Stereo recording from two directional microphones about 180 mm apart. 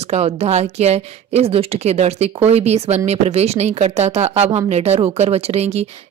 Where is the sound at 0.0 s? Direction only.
35° right (ahead or behind).